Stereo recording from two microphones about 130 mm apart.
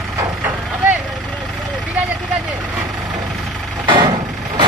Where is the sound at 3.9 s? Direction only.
35° right (ahead or behind).